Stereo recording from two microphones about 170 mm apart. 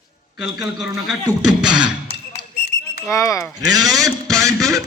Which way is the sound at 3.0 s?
20° left (ahead or behind).